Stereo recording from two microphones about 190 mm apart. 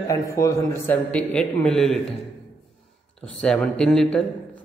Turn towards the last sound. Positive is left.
turn(degrees=5)  # may be behind; listen again after turning